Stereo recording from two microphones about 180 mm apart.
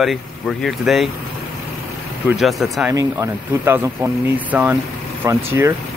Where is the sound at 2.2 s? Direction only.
Centre (ahead or behind).